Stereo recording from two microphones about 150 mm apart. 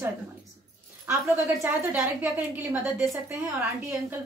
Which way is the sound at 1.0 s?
15° right (ahead or behind).